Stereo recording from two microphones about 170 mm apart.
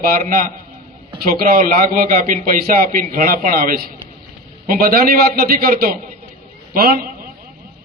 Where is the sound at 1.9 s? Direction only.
55° right (ahead or behind).